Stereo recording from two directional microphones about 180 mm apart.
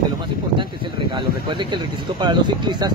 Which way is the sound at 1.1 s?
25° right (ahead or behind).